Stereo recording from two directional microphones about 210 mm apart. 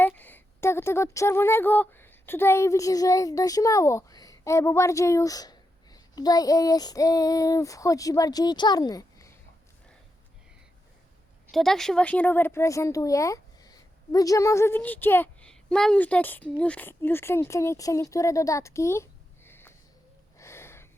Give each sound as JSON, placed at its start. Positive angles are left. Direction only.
{"t": 0.0, "sound": "speech", "side_deg": 10}
{"t": 11.5, "sound": "speech", "side_deg": 0}
{"t": 19.5, "sound": "a sound", "side_deg": 10}